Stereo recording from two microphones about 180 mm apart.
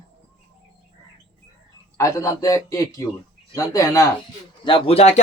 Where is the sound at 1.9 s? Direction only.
15° left (ahead or behind).